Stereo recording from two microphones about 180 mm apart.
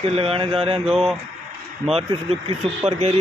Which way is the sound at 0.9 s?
Centre (ahead or behind).